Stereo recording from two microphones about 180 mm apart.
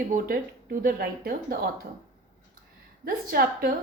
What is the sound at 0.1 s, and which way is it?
Speech, 50° right (ahead or behind).